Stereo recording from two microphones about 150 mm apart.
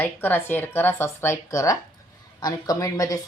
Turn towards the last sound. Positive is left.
turn(degrees=25)  # may be behind; listen again after turning